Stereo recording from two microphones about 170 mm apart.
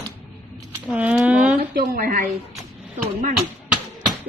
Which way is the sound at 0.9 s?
5° right (ahead or behind).